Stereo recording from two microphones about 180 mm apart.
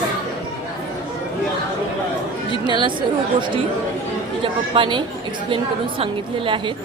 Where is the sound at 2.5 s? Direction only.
25° right (ahead or behind).